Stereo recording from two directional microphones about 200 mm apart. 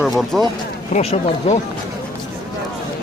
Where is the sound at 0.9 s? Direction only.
35° left (ahead or behind).